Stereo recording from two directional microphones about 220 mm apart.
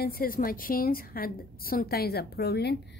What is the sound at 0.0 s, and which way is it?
A woman's voice, 40° left (ahead or behind).